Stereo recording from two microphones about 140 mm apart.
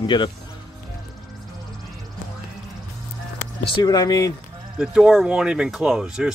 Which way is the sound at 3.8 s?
30° left (ahead or behind).